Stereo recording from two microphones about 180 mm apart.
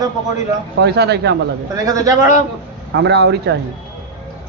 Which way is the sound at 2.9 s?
75° right (ahead or behind).